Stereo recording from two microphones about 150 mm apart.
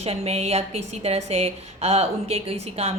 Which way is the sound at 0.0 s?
45° right (ahead or behind).